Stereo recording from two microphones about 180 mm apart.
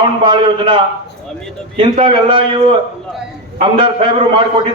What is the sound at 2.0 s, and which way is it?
Speech, 30° right (ahead or behind).